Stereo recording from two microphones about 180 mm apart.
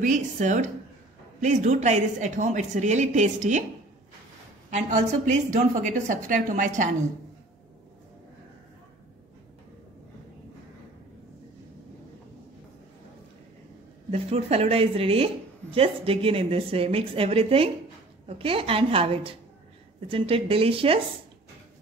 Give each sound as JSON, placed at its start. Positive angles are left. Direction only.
{"t": 0.0, "sound": "a woman's voice", "side_deg": -45}
{"t": 4.6, "sound": "a woman's voice", "side_deg": -40}
{"t": 14.1, "sound": "a woman's voice", "side_deg": -35}